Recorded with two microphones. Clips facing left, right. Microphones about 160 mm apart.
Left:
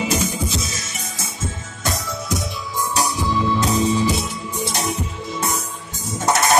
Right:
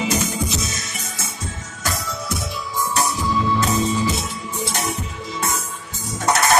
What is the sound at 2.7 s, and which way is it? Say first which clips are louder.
Music: even; 15° left (ahead or behind).